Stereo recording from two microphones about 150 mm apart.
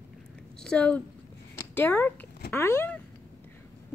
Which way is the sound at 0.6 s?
5° left (ahead or behind).